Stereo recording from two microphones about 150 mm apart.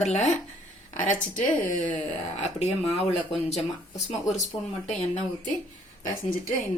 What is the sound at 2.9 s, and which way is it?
Speech, 45° left (ahead or behind).